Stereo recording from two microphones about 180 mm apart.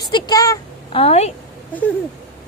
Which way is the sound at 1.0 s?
35° left (ahead or behind).